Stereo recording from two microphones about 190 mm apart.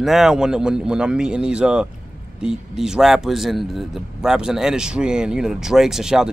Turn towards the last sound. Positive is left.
turn(degrees=-5)  # may be behind; listen again after turning